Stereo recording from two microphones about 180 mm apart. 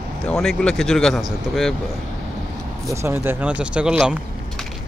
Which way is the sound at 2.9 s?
15° right (ahead or behind).